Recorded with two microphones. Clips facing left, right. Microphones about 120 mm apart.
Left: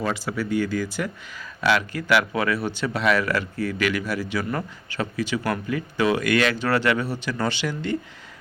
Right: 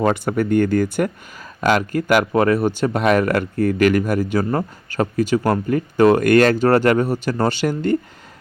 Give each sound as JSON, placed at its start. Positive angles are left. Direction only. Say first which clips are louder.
{"t": 0.0, "sound": "speech", "louder": "right 8 dB", "side_deg": -55}